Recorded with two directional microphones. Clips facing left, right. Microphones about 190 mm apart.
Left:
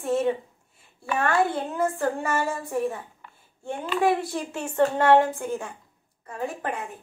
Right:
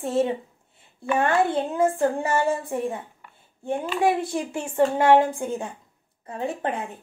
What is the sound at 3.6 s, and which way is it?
Speech, 15° right (ahead or behind).